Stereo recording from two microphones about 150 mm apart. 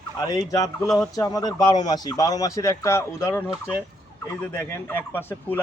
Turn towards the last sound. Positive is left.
turn(degrees=15)  # may be behind; listen again after turning